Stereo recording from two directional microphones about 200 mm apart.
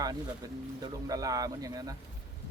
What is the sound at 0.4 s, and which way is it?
A man's voice, 20° right (ahead or behind).